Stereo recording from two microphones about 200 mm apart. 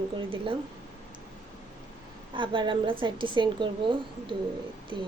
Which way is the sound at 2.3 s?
25° right (ahead or behind).